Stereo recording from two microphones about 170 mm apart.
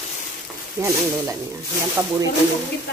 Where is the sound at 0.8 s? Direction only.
20° right (ahead or behind).